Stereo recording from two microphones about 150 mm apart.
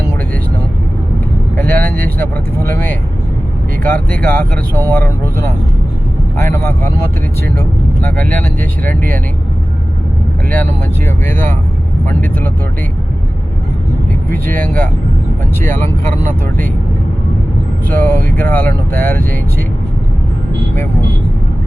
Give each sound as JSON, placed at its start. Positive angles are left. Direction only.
{"t": 1.5, "sound": "speech", "side_deg": 10}
{"t": 14.5, "sound": "speech", "side_deg": 15}
{"t": 17.8, "sound": "speech", "side_deg": 10}